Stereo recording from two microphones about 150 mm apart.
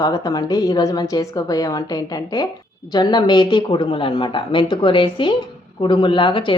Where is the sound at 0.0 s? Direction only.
25° left (ahead or behind).